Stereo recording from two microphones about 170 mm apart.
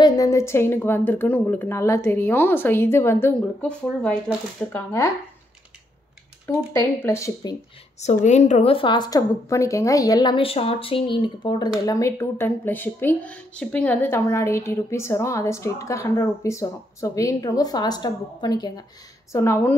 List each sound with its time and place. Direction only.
0.0 s speech: 20° left (ahead or behind)
7.0 s speech: 15° left (ahead or behind)
8.0 s a woman's voice: 45° left (ahead or behind); by 19.7 s 15° left (ahead or behind)